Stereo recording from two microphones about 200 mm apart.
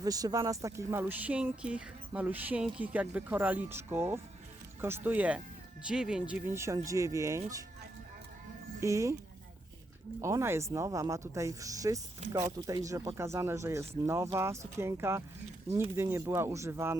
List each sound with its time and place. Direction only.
0.0 s speech: 20° right (ahead or behind)
8.8 s speech: 15° right (ahead or behind)
10.2 s speech: 15° right (ahead or behind)